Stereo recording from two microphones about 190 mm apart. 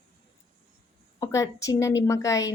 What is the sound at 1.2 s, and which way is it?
A woman's voice, 15° left (ahead or behind).